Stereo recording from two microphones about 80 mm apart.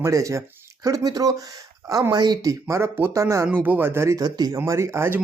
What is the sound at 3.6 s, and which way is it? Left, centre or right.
Speech, right.